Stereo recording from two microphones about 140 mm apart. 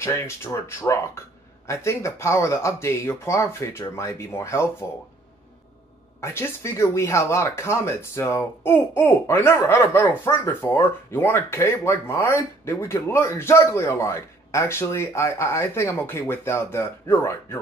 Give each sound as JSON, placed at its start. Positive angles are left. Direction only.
{"t": 0.0, "sound": "speech", "side_deg": 20}
{"t": 6.2, "sound": "speech", "side_deg": 20}